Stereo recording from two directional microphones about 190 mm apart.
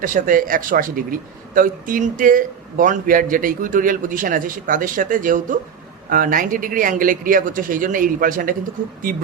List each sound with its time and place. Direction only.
0.0 s a man's voice: 45° right (ahead or behind)